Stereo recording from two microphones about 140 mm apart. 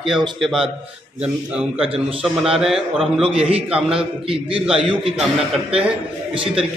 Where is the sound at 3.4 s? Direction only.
40° right (ahead or behind).